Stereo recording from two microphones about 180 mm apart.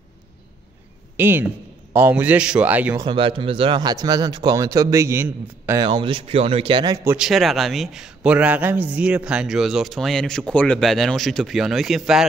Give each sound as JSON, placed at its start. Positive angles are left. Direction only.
{"t": 1.1, "sound": "a man's voice", "side_deg": -10}
{"t": 3.1, "sound": "speech", "side_deg": -30}
{"t": 5.9, "sound": "speech", "side_deg": -25}
{"t": 7.1, "sound": "a man's voice", "side_deg": -5}